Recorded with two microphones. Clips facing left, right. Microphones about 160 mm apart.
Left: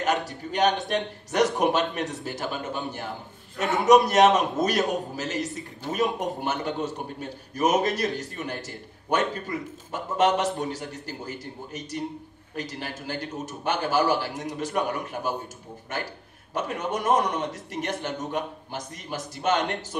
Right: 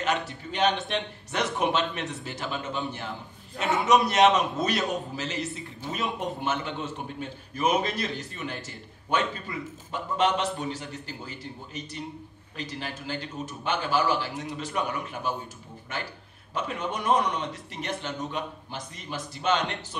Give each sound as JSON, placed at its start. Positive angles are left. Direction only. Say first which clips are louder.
{"t": 0.0, "sound": "a man's voice", "louder": "left 2 dB", "side_deg": 40}
{"t": 16.5, "sound": "a man's voice", "louder": "left 3 dB", "side_deg": 45}